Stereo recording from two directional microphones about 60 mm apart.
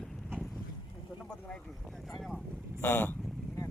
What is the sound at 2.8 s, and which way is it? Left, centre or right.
Speech, left.